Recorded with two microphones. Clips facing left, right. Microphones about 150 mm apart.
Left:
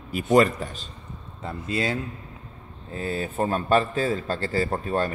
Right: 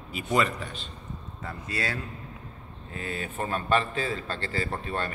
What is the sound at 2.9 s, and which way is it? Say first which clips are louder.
Speech: left 6 dB; 35° left (ahead or behind).